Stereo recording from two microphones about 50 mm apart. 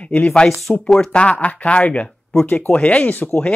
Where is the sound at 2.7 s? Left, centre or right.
Left.